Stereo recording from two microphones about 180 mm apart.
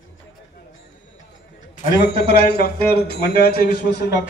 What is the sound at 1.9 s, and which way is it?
A man's voice, 65° left (ahead or behind).